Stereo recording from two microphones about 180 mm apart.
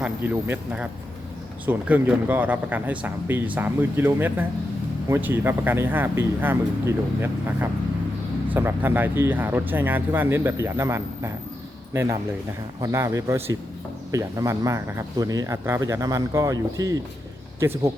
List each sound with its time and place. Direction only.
0.0 s speech: 10° right (ahead or behind)